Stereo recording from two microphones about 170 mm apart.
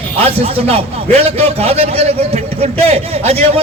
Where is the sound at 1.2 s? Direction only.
35° right (ahead or behind).